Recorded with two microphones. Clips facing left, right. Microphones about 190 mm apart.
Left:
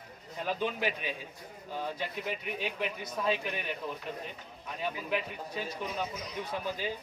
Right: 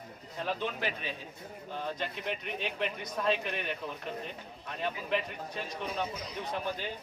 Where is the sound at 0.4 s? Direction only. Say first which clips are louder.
Left 2 dB; 10° left (ahead or behind).